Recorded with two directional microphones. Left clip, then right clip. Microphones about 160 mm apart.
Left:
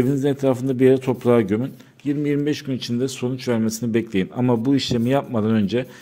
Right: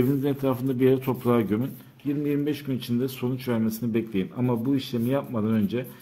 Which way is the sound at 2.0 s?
45° left (ahead or behind).